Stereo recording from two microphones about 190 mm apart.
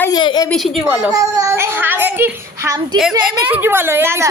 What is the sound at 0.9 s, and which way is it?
A child's voice, 15° right (ahead or behind).